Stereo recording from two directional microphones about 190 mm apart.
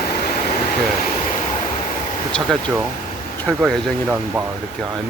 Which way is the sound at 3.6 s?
5° right (ahead or behind).